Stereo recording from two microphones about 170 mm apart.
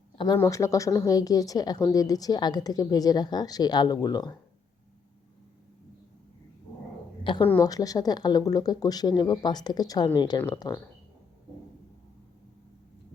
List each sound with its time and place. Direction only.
0.3 s a woman's voice: 15° left (ahead or behind)
7.3 s a woman's voice: 30° left (ahead or behind)